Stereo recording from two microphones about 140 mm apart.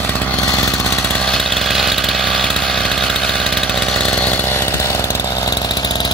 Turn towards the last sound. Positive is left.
turn(degrees=30)  # may be behind; listen again after turning